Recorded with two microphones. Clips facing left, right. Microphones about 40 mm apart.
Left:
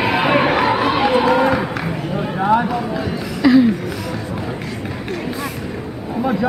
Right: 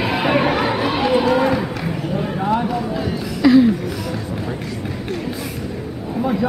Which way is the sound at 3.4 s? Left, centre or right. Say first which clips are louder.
Even; centre.